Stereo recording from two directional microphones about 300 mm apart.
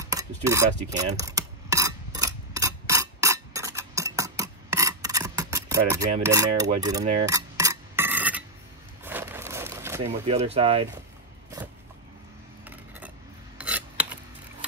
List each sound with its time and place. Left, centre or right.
0.0 s speech: centre
1.2 s mechanisms: centre
7.2 s filing: centre
9.0 s a sound: centre
10.0 s speech: centre
13.6 s filing: centre